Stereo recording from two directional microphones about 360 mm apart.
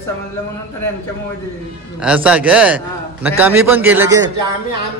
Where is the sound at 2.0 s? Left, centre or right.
Centre.